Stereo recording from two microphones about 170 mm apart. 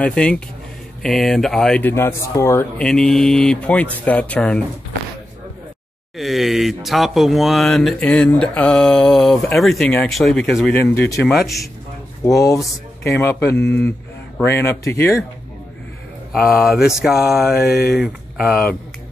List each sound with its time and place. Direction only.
0.0 s speech: 5° left (ahead or behind)
2.9 s speech: 5° left (ahead or behind)
6.1 s speech: centre (ahead or behind)
10.8 s speech: 15° left (ahead or behind)
12.3 s speech: 20° left (ahead or behind)
13.6 s speech: 80° left
14.4 s speech: 15° left (ahead or behind)
16.3 s speech: centre (ahead or behind)